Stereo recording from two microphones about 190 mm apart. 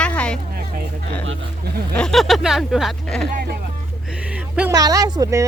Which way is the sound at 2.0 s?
Centre (ahead or behind).